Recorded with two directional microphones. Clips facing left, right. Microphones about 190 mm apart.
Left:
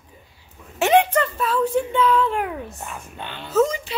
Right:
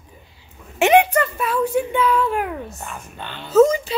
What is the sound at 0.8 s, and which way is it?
Speech, 10° right (ahead or behind).